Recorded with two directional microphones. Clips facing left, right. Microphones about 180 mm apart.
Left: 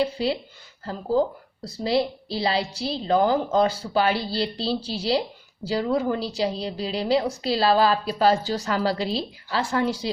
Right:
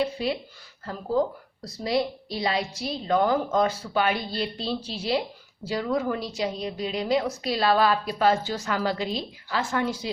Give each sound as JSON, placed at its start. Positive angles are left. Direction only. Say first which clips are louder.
{"t": 0.0, "sound": "a woman's voice", "louder": "left 2 dB", "side_deg": 30}